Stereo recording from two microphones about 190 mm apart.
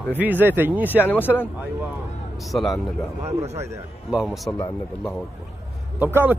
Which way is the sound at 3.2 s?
35° right (ahead or behind).